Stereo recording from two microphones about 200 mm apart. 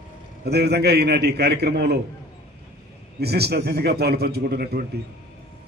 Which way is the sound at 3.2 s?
55° right (ahead or behind).